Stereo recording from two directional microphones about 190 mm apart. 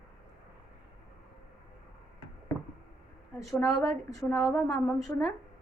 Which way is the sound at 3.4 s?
15° left (ahead or behind).